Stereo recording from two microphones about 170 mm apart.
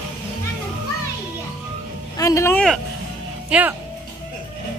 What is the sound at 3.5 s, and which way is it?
Speech, 10° right (ahead or behind).